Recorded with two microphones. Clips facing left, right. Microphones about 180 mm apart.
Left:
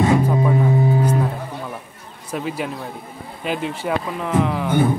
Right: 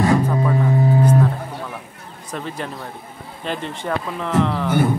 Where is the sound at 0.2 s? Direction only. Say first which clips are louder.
Left 1 dB; 15° left (ahead or behind).